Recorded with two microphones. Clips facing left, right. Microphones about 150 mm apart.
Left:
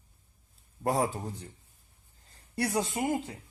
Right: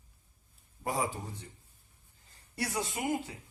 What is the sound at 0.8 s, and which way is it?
Speech, 60° left (ahead or behind).